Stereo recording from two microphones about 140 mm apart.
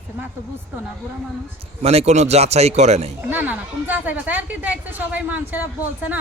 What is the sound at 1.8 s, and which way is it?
A man's voice, 45° right (ahead or behind).